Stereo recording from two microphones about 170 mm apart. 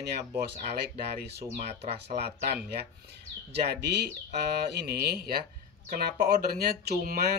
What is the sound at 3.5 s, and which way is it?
Speech, 75° right (ahead or behind).